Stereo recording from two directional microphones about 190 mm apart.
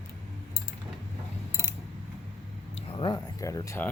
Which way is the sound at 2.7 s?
30° left (ahead or behind).